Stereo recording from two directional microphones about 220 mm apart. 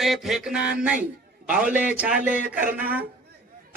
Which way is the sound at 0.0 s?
Centre (ahead or behind).